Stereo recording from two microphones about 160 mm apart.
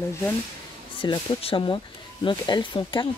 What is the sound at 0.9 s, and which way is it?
Speech, 30° left (ahead or behind).